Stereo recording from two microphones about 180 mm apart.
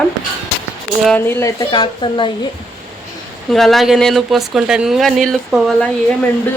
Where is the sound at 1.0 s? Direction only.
10° left (ahead or behind).